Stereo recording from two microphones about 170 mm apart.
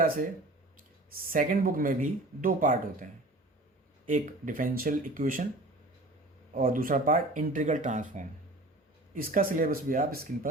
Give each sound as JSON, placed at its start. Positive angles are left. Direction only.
{"t": 1.1, "sound": "speech", "side_deg": -55}
{"t": 6.5, "sound": "speech", "side_deg": -55}